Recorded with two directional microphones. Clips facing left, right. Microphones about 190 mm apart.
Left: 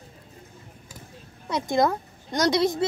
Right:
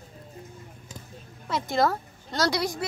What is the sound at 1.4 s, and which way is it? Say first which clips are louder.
A woman's voice: left 2 dB; 20° left (ahead or behind).